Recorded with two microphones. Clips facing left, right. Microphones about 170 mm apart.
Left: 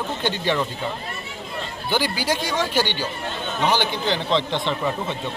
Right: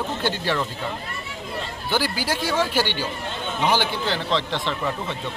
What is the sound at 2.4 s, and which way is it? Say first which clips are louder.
Speech: even; 10° right (ahead or behind).